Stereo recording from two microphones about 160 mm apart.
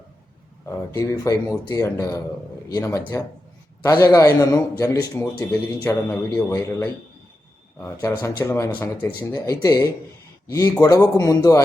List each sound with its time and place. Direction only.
0.6 s a man's voice: 15° left (ahead or behind)